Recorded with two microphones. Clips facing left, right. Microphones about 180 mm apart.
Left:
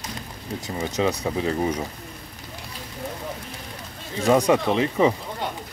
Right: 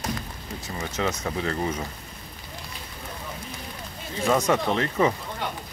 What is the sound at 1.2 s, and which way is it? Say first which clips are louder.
Speech: left 4 dB; 15° left (ahead or behind).